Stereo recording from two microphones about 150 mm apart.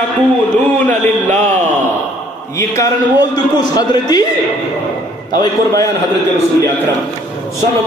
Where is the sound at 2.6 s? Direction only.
25° left (ahead or behind).